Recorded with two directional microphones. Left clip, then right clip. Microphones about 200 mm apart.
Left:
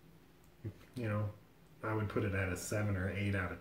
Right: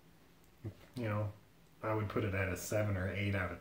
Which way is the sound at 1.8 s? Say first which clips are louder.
Right 1 dB; 10° left (ahead or behind).